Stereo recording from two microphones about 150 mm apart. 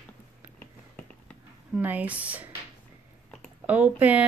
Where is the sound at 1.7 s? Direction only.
10° right (ahead or behind).